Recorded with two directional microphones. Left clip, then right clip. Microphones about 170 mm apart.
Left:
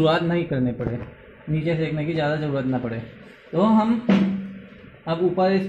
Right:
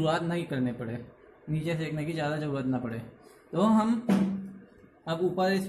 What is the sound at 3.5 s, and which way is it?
Speech, 5° right (ahead or behind).